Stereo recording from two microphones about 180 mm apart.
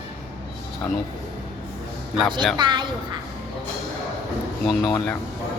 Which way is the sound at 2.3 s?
25° right (ahead or behind).